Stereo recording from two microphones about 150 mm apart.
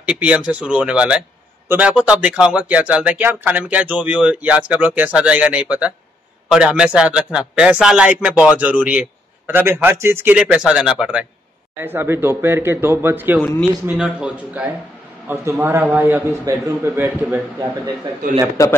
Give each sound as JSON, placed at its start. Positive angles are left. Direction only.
{"t": 0.0, "sound": "speech", "side_deg": -10}
{"t": 13.4, "sound": "speech", "side_deg": 5}
{"t": 13.8, "sound": "speech", "side_deg": -5}
{"t": 18.6, "sound": "a man's voice", "side_deg": 20}